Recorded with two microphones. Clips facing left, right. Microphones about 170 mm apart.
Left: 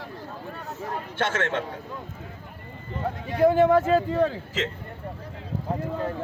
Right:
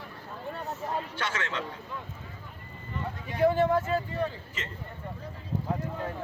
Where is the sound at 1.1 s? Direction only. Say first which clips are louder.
Left 7 dB; 50° left (ahead or behind).